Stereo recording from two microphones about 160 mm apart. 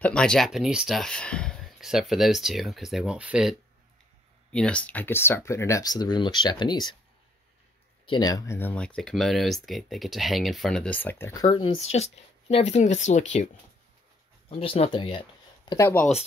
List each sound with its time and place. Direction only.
0.0 s speech: 5° left (ahead or behind)
4.5 s speech: 5° left (ahead or behind); by 7.0 s 25° left (ahead or behind)
8.1 s speech: 25° left (ahead or behind)
11.5 s speech: 35° left (ahead or behind)
14.5 s speech: 35° left (ahead or behind)
15.7 s speech: 15° left (ahead or behind)